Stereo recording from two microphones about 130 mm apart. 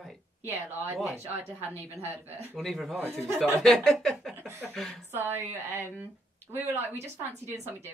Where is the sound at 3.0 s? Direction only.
15° right (ahead or behind).